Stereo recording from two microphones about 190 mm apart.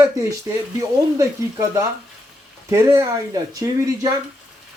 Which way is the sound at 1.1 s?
15° right (ahead or behind).